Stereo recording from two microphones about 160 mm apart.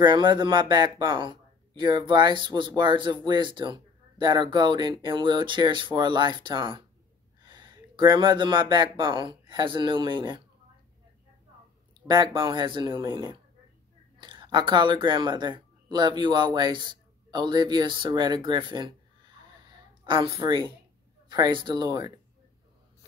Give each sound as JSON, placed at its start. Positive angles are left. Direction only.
{"t": 0.0, "sound": "speech", "side_deg": -30}
{"t": 12.1, "sound": "speech", "side_deg": -30}
{"t": 14.2, "sound": "speech", "side_deg": -30}
{"t": 20.2, "sound": "speech", "side_deg": -20}